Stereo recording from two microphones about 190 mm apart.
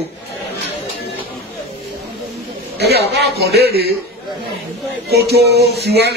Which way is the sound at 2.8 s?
60° right (ahead or behind).